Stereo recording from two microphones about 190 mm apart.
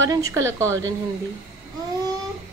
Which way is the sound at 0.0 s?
15° right (ahead or behind).